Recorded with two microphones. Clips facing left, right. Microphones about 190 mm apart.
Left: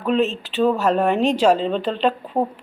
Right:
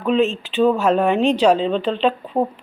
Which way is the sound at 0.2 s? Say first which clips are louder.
Right 2 dB; 40° left (ahead or behind).